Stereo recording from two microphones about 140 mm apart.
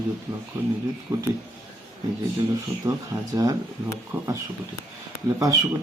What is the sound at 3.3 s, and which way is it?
Speech, 25° right (ahead or behind).